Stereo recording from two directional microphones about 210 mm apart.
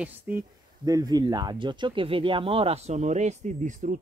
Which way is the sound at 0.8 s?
20° right (ahead or behind).